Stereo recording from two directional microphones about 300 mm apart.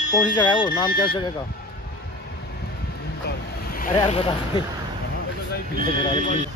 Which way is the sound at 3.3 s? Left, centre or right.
Left.